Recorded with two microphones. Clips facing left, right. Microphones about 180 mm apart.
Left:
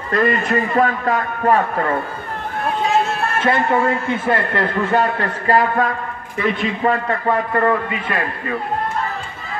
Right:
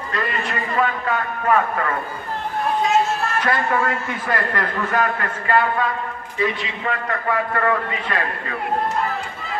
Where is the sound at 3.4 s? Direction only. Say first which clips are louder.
Left 6 dB; 25° left (ahead or behind); by 5.9 s 45° left (ahead or behind).